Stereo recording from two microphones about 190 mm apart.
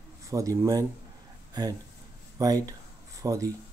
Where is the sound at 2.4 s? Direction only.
20° right (ahead or behind).